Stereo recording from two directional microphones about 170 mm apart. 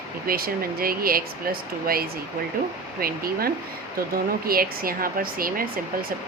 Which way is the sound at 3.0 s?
60° right (ahead or behind).